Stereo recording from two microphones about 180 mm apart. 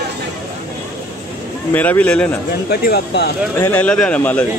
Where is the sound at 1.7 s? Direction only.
10° left (ahead or behind).